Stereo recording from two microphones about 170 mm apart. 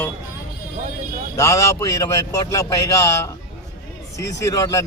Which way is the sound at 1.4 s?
20° left (ahead or behind).